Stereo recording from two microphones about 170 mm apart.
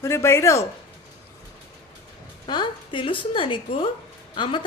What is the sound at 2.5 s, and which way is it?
A woman's voice, 25° left (ahead or behind).